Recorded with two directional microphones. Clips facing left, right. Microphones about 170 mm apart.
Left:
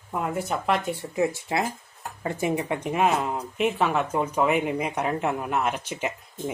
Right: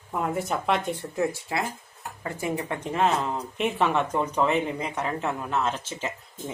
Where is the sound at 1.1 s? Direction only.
20° left (ahead or behind).